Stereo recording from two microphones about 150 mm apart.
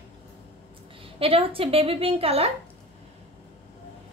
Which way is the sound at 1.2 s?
40° right (ahead or behind).